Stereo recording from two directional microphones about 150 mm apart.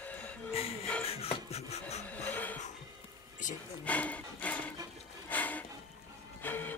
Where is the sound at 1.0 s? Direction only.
45° left (ahead or behind).